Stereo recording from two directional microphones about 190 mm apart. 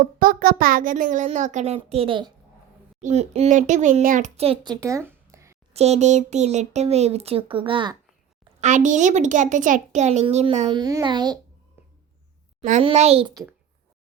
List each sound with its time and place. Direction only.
0.0 s speech: 50° right (ahead or behind); by 5.5 s 15° right (ahead or behind)
5.7 s speech: 35° right (ahead or behind)
8.6 s speech: 40° right (ahead or behind)
10.7 s speech: 20° right (ahead or behind)
12.8 s speech: 35° right (ahead or behind)